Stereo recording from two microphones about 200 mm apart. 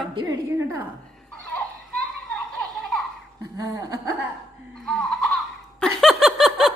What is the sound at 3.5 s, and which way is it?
Speech, 15° right (ahead or behind).